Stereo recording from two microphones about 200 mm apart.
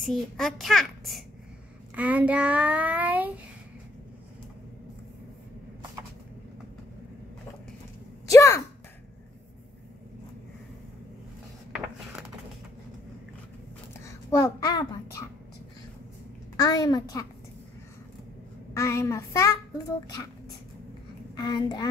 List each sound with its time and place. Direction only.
0.0 s a child's voice: centre (ahead or behind)
2.0 s child singing: 10° right (ahead or behind)
8.3 s a sound: 15° left (ahead or behind)
14.0 s a sound: 15° left (ahead or behind)
16.5 s a woman's voice: 20° left (ahead or behind)
18.7 s a child's voice: 15° left (ahead or behind)
21.4 s a woman's voice: 20° left (ahead or behind)